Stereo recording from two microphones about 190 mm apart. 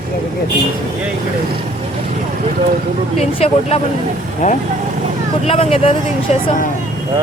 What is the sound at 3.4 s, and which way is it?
Speech, 35° left (ahead or behind).